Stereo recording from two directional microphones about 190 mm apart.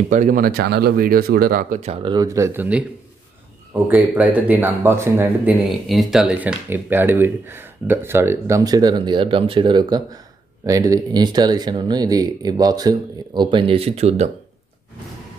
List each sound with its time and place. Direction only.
0.1 s speech: 45° right (ahead or behind)
2.1 s speech: 15° right (ahead or behind)
3.8 s speech: 10° right (ahead or behind); by 14.3 s 35° right (ahead or behind)